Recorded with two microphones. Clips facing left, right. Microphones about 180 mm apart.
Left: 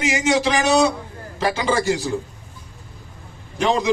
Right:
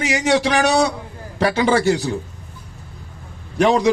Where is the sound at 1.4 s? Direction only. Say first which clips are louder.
Right 4 dB; 60° right (ahead or behind).